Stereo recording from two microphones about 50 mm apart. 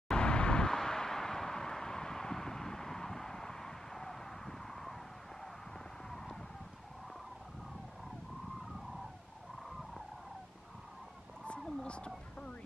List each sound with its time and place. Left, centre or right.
0.1 s vehicle: centre
6.0 s a sound: centre
11.8 s speech: left